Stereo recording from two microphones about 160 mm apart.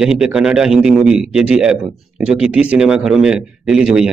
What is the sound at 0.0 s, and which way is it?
Speech, 5° right (ahead or behind).